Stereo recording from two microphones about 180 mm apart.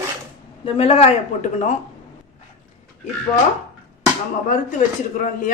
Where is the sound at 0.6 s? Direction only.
35° left (ahead or behind).